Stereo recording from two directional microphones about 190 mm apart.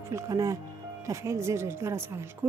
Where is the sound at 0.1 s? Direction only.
15° right (ahead or behind).